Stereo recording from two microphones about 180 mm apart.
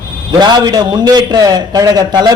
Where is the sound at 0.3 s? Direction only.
20° right (ahead or behind).